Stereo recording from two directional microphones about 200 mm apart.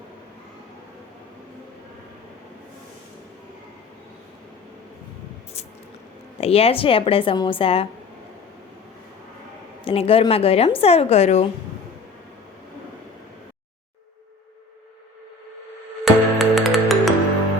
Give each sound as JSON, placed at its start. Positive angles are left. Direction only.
{"t": 6.4, "sound": "a woman's voice", "side_deg": 30}
{"t": 9.8, "sound": "a woman's voice", "side_deg": 30}
{"t": 16.0, "sound": "music", "side_deg": 0}